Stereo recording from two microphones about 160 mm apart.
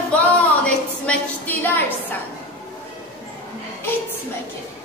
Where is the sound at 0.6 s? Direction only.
10° left (ahead or behind).